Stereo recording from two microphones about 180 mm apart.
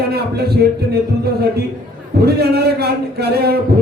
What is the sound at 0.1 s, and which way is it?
Speech, 60° right (ahead or behind).